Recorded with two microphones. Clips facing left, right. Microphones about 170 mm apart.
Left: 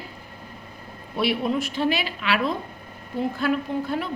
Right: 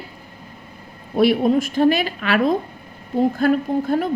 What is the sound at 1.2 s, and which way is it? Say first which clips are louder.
A woman's voice: right 8 dB; 45° right (ahead or behind).